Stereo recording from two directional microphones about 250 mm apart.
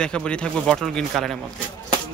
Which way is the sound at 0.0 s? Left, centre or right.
Centre.